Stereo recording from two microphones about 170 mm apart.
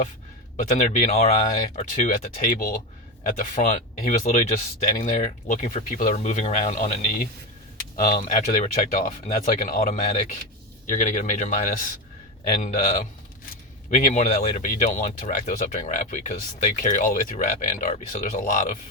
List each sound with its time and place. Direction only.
0.5 s speech: 45° left (ahead or behind)
13.9 s speech: 45° left (ahead or behind)